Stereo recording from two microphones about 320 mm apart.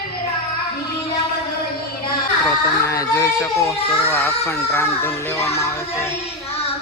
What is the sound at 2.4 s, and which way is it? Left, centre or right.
Speech, centre.